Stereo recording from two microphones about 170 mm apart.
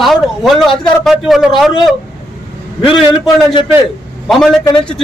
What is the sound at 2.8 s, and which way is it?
Speech, 30° left (ahead or behind).